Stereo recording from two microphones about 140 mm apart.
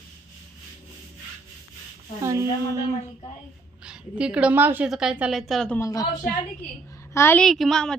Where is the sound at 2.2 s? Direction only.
25° right (ahead or behind).